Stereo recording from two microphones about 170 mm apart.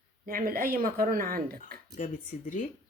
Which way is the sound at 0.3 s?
55° right (ahead or behind).